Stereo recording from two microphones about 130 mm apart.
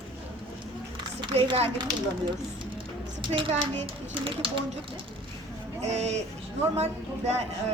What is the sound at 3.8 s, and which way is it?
Speech, 40° right (ahead or behind).